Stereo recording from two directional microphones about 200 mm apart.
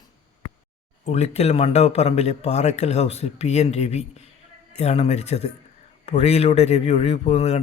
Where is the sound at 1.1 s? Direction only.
30° left (ahead or behind).